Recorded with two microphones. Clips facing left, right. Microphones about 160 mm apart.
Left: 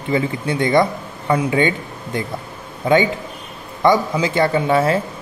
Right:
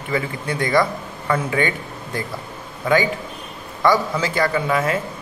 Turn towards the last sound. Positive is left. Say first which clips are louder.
# left 4 dB
turn(degrees=30)  # may be behind; listen again after turning